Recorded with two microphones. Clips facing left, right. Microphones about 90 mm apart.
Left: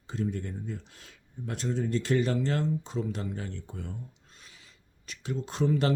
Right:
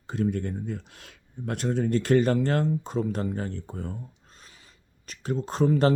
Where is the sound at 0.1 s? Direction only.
60° right (ahead or behind); by 3.9 s 40° right (ahead or behind).